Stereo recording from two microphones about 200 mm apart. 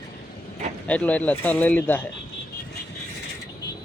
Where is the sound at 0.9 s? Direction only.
5° left (ahead or behind).